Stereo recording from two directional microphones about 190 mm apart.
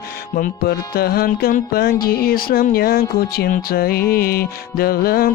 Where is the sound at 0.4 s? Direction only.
55° left (ahead or behind).